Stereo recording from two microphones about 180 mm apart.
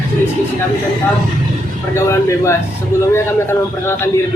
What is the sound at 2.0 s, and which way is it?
A man's voice, 15° left (ahead or behind).